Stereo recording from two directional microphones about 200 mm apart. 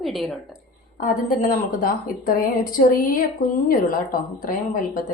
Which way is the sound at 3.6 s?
45° left (ahead or behind).